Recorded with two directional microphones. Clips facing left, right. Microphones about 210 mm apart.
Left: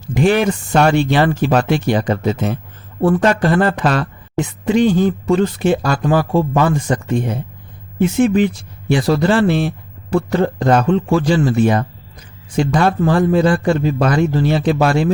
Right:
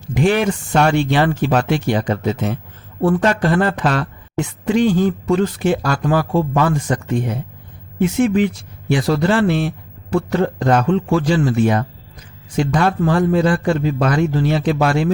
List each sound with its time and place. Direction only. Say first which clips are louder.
0.1 s speech: left 2 dB; 40° left (ahead or behind)
4.4 s speech: left 2 dB; 20° left (ahead or behind)